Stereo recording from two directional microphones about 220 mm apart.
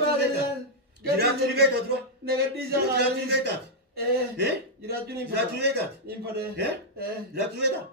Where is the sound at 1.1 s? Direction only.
45° right (ahead or behind).